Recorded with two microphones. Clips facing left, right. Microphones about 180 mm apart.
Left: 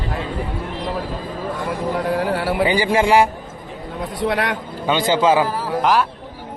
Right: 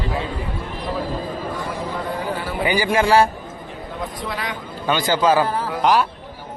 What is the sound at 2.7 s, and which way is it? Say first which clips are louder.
Speech: right 1 dB; 25° left (ahead or behind).